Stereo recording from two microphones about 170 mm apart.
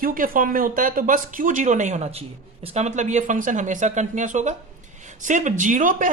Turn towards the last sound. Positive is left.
turn(degrees=-50)  # may be behind; listen again after turning